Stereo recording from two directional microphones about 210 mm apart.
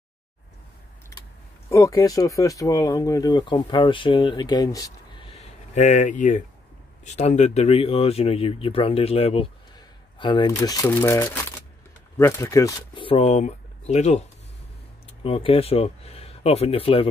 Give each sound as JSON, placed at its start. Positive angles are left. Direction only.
{"t": 1.7, "sound": "speech", "side_deg": 15}
{"t": 15.2, "sound": "speech", "side_deg": 25}